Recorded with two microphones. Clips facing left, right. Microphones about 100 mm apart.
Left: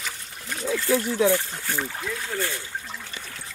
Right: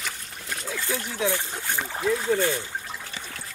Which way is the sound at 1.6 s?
15° right (ahead or behind).